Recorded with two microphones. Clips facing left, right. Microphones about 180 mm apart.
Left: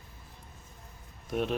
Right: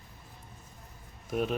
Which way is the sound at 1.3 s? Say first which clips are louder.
Even; centre (ahead or behind).